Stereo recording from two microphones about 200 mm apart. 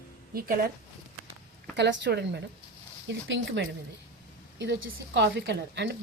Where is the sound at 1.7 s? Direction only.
60° right (ahead or behind).